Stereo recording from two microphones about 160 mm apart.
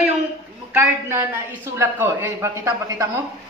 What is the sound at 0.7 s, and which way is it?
A man's voice, 15° right (ahead or behind).